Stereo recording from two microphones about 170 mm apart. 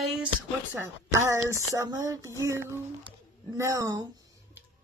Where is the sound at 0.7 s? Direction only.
15° right (ahead or behind).